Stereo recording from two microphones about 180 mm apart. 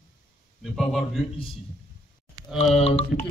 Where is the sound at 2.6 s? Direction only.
35° left (ahead or behind).